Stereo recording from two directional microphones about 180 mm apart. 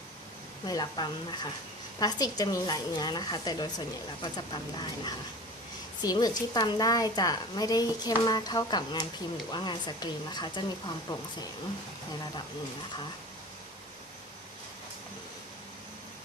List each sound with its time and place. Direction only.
0.6 s a woman's voice: 25° left (ahead or behind)